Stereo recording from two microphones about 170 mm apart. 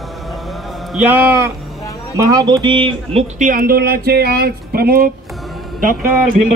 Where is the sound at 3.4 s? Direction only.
55° right (ahead or behind).